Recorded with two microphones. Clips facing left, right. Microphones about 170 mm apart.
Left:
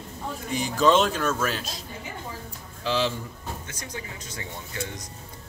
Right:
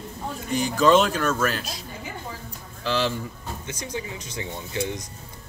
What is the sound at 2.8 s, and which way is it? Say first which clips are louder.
Speech: right 1 dB; centre (ahead or behind).